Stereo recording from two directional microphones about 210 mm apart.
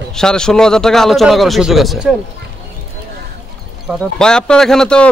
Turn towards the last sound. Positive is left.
turn(degrees=5)  # may be behind; listen again after turning